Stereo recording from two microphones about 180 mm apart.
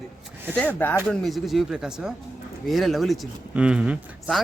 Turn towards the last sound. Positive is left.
turn(degrees=-5)  # may be behind; listen again after turning